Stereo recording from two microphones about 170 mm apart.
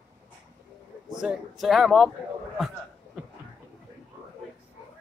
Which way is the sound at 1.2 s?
5° right (ahead or behind).